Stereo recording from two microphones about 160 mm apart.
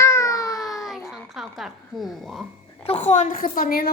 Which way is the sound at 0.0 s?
20° left (ahead or behind).